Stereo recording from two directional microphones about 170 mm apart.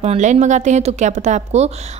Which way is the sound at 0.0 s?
40° right (ahead or behind).